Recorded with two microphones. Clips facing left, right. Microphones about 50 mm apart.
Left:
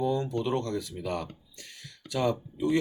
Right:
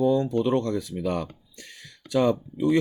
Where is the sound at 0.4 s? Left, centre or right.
Right.